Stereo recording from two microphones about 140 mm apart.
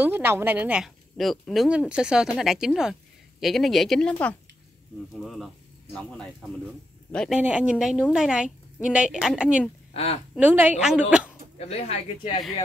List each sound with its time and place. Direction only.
0.0 s a woman's voice: 15° right (ahead or behind)
7.1 s speech: 5° left (ahead or behind)
7.3 s a woman's voice: 10° right (ahead or behind)
9.9 s speech: 45° left (ahead or behind)
10.3 s a woman's voice: 10° right (ahead or behind)
11.5 s speech: 45° left (ahead or behind)